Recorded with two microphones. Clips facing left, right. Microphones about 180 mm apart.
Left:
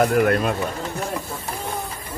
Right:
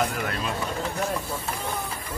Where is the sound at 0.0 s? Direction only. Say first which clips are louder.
Left 10 dB; 55° left (ahead or behind).